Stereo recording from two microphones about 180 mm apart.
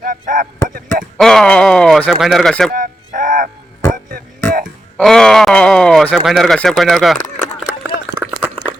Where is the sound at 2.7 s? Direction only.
45° right (ahead or behind).